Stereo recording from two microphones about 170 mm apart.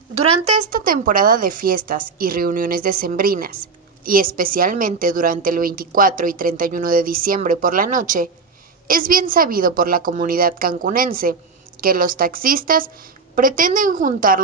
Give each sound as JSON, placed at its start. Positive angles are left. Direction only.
{"t": 0.2, "sound": "a woman's voice", "side_deg": -50}